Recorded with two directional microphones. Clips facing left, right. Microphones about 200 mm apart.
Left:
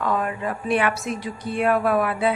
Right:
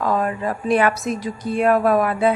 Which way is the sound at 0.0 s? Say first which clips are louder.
Right 3 dB; 35° right (ahead or behind).